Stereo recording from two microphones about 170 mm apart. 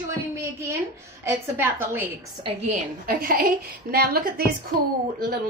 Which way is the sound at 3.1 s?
55° right (ahead or behind).